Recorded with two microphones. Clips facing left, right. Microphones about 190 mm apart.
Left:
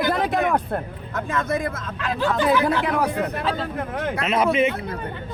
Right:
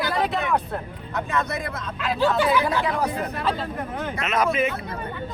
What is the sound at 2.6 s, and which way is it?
Speech, 60° left (ahead or behind).